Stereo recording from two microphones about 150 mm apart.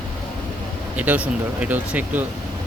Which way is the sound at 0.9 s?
10° right (ahead or behind).